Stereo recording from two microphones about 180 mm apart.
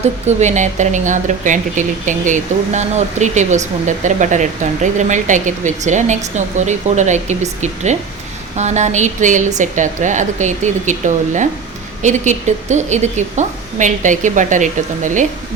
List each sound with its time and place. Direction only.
0.0 s a woman's voice: 40° right (ahead or behind)